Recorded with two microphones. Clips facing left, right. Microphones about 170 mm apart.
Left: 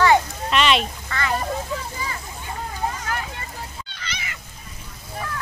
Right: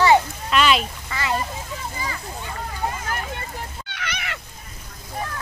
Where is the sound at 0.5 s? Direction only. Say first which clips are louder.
Even; centre (ahead or behind).